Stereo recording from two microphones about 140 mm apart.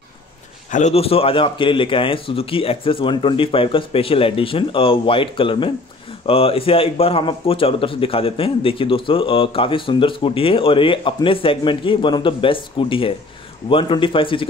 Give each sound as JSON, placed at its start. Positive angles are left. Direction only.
{"t": 0.7, "sound": "a man's voice", "side_deg": 60}